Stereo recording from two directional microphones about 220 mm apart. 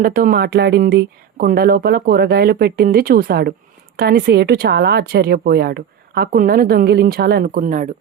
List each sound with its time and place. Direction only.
0.0 s speech: 40° right (ahead or behind)